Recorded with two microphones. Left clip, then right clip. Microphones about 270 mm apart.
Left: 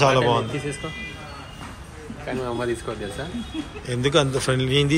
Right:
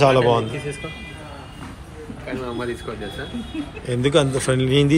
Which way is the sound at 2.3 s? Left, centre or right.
Left.